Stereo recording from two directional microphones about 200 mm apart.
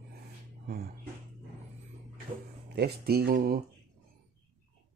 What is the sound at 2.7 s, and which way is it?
Speech, 55° right (ahead or behind).